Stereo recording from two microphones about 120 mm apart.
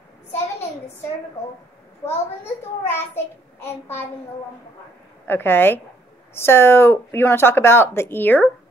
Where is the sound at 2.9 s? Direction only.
20° left (ahead or behind).